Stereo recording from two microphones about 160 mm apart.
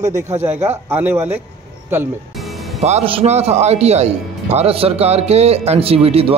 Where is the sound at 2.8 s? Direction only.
40° right (ahead or behind).